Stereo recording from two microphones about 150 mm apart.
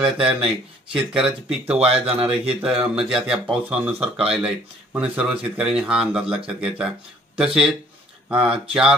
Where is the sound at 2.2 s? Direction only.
5° right (ahead or behind).